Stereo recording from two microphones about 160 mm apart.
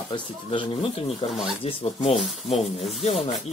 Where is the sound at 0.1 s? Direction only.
35° left (ahead or behind).